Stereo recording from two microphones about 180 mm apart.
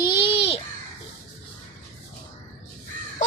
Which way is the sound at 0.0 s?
30° left (ahead or behind).